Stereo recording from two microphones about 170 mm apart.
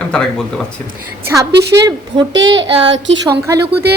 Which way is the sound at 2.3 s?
90° right.